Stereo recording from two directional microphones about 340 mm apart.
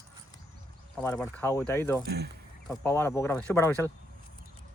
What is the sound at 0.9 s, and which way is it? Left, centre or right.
Speech, centre.